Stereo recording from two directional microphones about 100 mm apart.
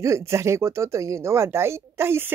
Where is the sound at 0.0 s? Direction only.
30° right (ahead or behind).